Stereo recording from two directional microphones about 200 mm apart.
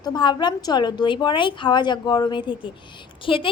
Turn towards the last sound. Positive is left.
turn(degrees=25)  # may be behind; listen again after turning